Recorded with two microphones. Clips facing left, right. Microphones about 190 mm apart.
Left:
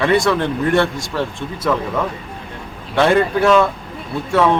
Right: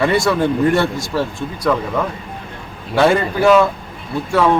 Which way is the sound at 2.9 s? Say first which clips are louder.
Even; centre (ahead or behind).